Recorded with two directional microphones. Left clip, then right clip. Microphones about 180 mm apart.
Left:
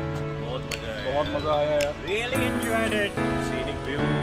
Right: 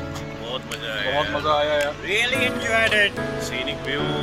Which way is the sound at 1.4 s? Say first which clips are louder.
Right 4 dB; 10° right (ahead or behind).